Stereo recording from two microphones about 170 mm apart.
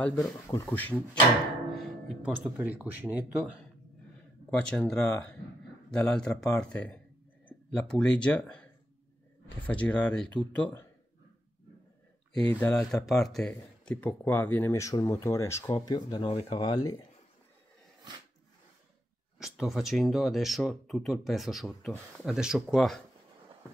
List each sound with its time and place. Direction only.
0.0 s speech: 5° left (ahead or behind)
1.7 s music: centre (ahead or behind)
2.3 s speech: 10° right (ahead or behind)
4.5 s speech: 5° left (ahead or behind)
12.4 s speech: 10° left (ahead or behind)
19.3 s speech: centre (ahead or behind)